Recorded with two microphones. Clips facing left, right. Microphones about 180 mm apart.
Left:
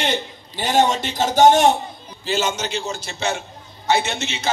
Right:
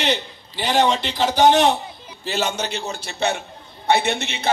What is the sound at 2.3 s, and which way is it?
A man's voice, 60° right (ahead or behind).